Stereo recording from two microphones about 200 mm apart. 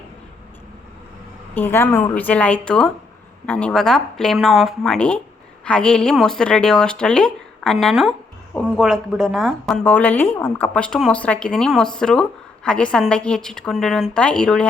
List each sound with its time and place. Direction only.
1.5 s a woman's voice: 10° left (ahead or behind)